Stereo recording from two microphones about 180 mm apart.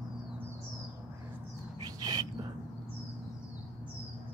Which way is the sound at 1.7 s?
20° right (ahead or behind).